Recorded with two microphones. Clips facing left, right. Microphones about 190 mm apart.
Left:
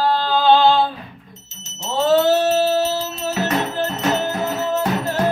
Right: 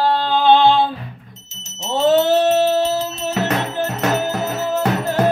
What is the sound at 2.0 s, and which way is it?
Music, 20° right (ahead or behind).